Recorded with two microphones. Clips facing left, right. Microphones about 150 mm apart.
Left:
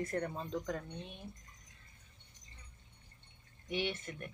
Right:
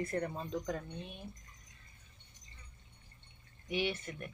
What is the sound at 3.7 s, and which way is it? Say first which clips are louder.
Speech: right 2 dB; 10° right (ahead or behind).